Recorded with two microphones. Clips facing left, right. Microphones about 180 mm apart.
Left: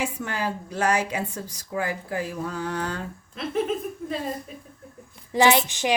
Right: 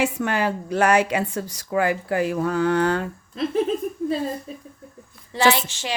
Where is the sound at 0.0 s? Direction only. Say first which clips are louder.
Right 6 dB; 75° right (ahead or behind).